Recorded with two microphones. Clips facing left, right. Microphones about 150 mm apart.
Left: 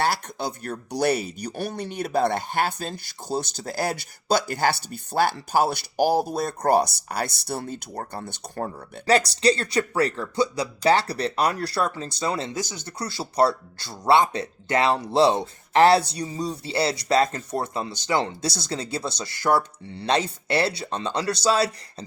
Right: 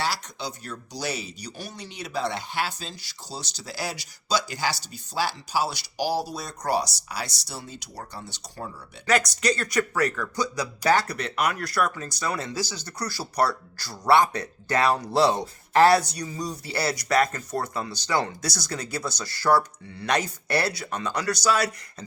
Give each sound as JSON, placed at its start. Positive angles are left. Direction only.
{"t": 0.0, "sound": "speech", "side_deg": 55}
{"t": 9.0, "sound": "speech", "side_deg": 30}